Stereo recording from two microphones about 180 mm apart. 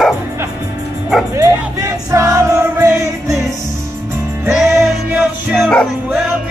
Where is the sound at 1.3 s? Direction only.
15° right (ahead or behind).